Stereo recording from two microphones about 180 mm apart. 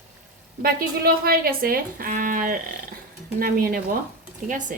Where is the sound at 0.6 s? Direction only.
55° right (ahead or behind).